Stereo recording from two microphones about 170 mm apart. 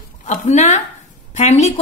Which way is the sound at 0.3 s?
45° left (ahead or behind).